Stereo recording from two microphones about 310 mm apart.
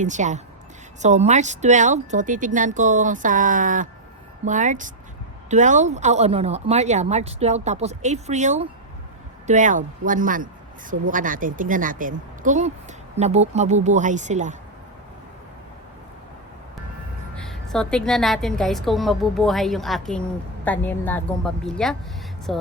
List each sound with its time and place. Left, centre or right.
0.0 s speech: right
17.3 s a woman's voice: centre